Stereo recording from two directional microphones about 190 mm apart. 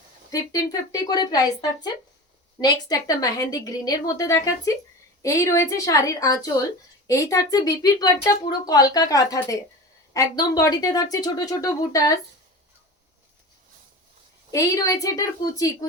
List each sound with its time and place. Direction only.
0.3 s a woman's voice: 20° left (ahead or behind)
14.5 s a woman's voice: 15° left (ahead or behind)